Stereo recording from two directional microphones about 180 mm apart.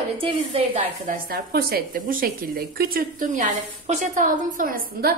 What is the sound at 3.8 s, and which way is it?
A woman's voice, 40° right (ahead or behind).